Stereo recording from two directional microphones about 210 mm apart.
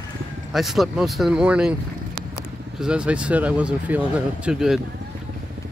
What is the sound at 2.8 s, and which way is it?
Speech, 5° right (ahead or behind).